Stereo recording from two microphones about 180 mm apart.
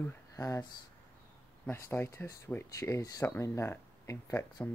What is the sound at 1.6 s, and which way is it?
Speech, 15° left (ahead or behind).